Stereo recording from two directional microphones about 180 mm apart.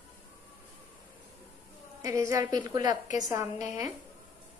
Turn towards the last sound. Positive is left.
turn(degrees=-20)  # may be behind; listen again after turning